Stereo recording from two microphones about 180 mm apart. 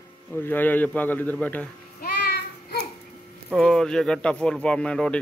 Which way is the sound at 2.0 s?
65° left (ahead or behind).